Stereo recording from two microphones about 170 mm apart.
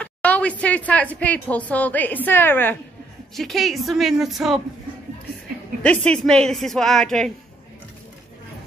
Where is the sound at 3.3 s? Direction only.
Centre (ahead or behind).